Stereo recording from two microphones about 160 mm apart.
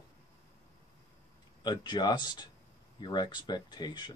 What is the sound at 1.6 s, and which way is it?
Speech, 25° left (ahead or behind).